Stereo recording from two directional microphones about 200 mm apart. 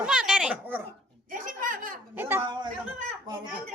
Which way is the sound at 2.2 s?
10° right (ahead or behind).